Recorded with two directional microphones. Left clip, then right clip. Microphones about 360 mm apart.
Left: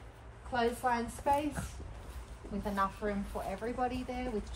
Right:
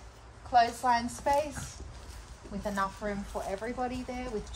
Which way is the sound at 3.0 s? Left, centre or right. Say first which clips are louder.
Right 2 dB; right.